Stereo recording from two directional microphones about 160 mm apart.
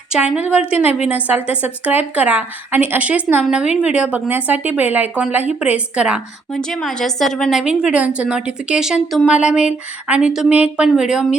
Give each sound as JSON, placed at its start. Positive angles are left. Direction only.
{"t": 0.1, "sound": "speech", "side_deg": -5}